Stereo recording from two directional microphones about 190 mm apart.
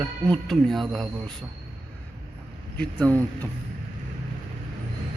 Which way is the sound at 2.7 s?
5° left (ahead or behind).